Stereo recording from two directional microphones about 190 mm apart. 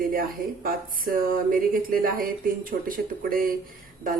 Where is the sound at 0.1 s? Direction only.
50° right (ahead or behind).